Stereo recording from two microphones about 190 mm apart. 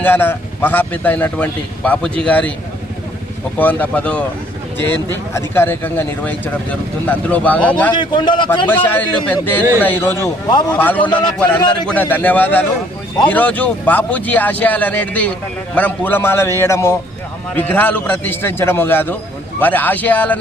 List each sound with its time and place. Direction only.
0.0 s speech: 10° left (ahead or behind)
3.6 s speech: 10° left (ahead or behind)
7.9 s a man's voice: 25° left (ahead or behind)
8.6 s speech: 10° left (ahead or behind)